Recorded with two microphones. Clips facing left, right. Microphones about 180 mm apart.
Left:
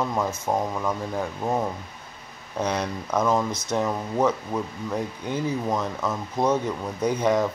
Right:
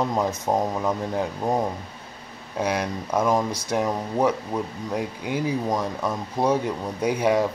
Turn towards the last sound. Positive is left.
turn(degrees=-10)  # may be behind; listen again after turning